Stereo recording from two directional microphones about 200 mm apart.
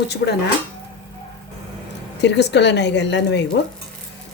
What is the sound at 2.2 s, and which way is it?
A woman's voice, 60° left (ahead or behind).